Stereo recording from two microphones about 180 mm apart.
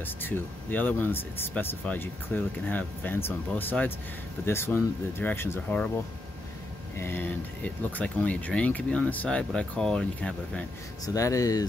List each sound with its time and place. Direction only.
0.0 s speech: 10° left (ahead or behind)
7.0 s speech: 10° left (ahead or behind)
11.1 s speech: 20° left (ahead or behind)